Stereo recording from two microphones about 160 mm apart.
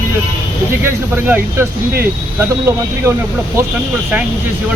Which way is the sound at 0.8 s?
15° right (ahead or behind).